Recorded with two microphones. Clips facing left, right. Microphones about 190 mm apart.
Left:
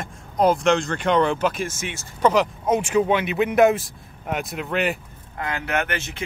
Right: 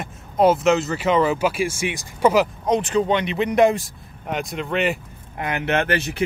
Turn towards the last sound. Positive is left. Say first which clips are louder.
# right 4 dB
turn(degrees=-35)  # may be behind; listen again after turning